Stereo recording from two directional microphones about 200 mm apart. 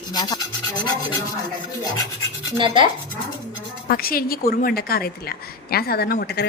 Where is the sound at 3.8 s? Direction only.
45° left (ahead or behind).